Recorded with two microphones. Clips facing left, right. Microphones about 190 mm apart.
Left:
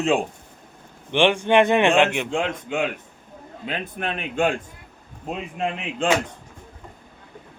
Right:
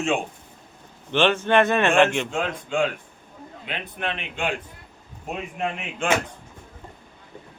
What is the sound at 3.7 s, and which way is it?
Speech, 40° left (ahead or behind).